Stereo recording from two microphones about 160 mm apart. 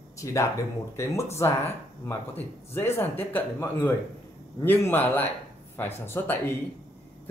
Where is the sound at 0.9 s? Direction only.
15° left (ahead or behind).